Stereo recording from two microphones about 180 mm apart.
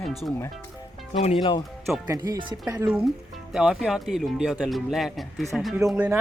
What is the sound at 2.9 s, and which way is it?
Speech, 5° right (ahead or behind).